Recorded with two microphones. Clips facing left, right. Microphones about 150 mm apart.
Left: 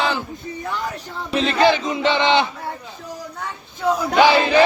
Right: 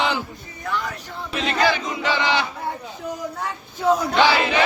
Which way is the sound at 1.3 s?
30° left (ahead or behind).